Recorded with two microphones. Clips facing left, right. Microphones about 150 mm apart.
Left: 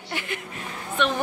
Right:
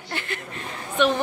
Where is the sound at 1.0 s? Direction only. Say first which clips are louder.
Right 4 dB; centre (ahead or behind).